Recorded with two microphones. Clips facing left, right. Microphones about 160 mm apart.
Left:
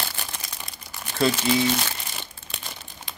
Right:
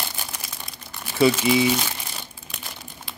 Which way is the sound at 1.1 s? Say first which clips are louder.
Right 4 dB; 5° right (ahead or behind).